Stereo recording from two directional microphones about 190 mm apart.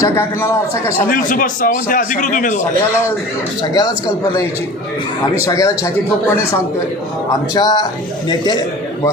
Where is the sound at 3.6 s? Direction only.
20° left (ahead or behind).